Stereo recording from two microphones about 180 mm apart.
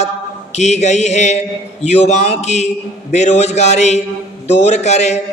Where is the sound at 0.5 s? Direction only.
40° left (ahead or behind).